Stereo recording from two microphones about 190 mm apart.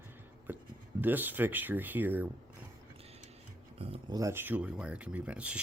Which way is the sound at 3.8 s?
30° right (ahead or behind).